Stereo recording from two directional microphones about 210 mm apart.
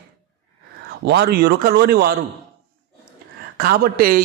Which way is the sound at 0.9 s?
50° right (ahead or behind).